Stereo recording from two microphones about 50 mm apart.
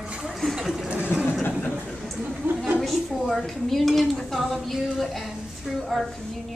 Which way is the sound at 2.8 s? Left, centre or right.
Centre.